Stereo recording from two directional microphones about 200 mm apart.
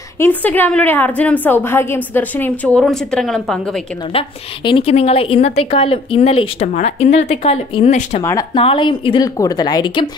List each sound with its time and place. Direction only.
0.2 s a woman's voice: 10° left (ahead or behind)
4.1 s a woman's voice: 25° left (ahead or behind)
8.2 s a woman's voice: 15° left (ahead or behind)
8.5 s a woman's voice: 25° left (ahead or behind)